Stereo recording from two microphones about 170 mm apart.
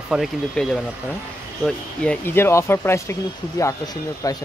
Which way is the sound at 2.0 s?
15° left (ahead or behind).